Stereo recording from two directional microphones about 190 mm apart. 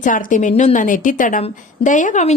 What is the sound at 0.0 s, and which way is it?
A woman's voice, 45° left (ahead or behind).